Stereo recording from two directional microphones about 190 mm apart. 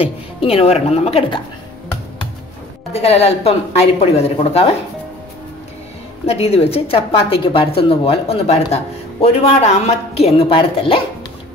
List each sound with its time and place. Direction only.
0.0 s a woman's voice: 30° left (ahead or behind)
2.9 s a woman's voice: 35° left (ahead or behind)
6.2 s a woman's voice: 35° left (ahead or behind)